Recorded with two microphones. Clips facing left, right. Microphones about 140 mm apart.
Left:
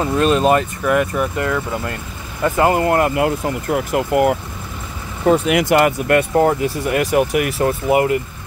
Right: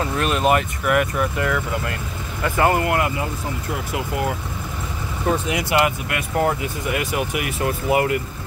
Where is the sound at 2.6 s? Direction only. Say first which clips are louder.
Left 3 dB; 20° left (ahead or behind).